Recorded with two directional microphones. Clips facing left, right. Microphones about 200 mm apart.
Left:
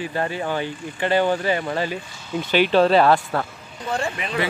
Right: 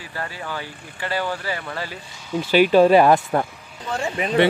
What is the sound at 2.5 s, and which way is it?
Speech, 10° right (ahead or behind).